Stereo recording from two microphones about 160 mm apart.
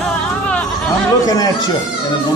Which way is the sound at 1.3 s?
25° left (ahead or behind).